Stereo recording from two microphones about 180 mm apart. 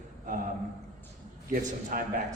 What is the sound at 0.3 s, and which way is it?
Speech, 45° right (ahead or behind).